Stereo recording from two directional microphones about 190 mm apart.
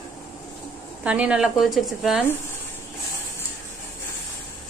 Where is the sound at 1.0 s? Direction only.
5° right (ahead or behind).